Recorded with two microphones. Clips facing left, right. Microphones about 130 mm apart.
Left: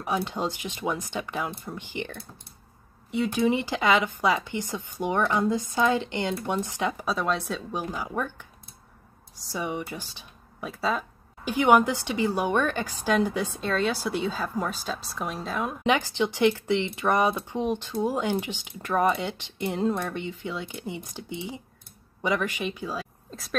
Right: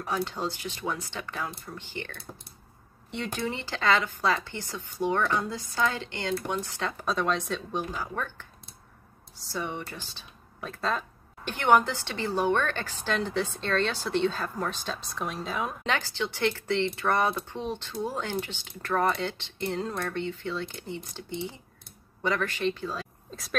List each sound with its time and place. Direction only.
0.0 s speech: 15° left (ahead or behind); by 15.7 s centre (ahead or behind)
15.8 s speech: 15° left (ahead or behind)
23.3 s speech: centre (ahead or behind)